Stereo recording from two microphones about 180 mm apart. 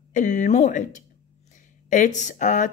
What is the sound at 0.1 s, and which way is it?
Speech, 45° left (ahead or behind).